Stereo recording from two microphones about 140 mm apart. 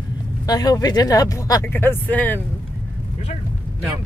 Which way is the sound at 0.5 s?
25° left (ahead or behind).